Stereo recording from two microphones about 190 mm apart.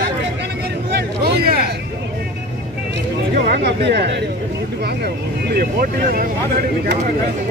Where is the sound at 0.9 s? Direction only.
55° right (ahead or behind).